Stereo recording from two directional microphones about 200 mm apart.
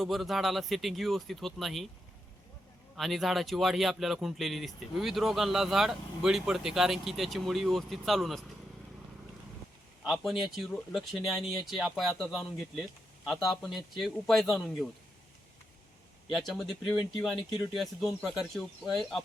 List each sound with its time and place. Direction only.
0.0 s a man's voice: centre (ahead or behind)
2.9 s a man's voice: centre (ahead or behind)
10.0 s a man's voice: centre (ahead or behind)
16.3 s a man's voice: centre (ahead or behind)